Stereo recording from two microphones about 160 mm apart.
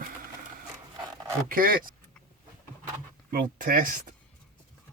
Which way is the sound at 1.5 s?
65° right (ahead or behind).